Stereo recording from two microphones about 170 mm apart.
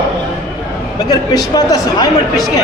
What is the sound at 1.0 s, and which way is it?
Speech, 25° left (ahead or behind).